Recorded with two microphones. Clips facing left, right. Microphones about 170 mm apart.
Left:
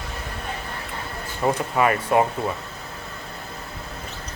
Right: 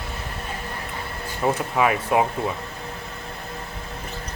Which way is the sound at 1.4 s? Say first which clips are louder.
Even; 5° right (ahead or behind).